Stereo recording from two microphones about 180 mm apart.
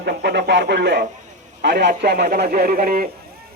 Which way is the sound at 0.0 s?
65° right (ahead or behind).